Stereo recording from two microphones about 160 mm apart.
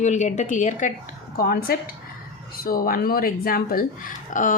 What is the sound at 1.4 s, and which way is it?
A woman's voice, 70° left (ahead or behind).